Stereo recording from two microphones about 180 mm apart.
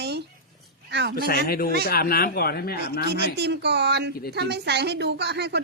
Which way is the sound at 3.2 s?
70° right (ahead or behind).